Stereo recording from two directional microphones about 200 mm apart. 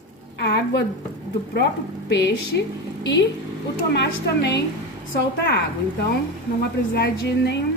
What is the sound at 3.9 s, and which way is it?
Speech, 60° left (ahead or behind).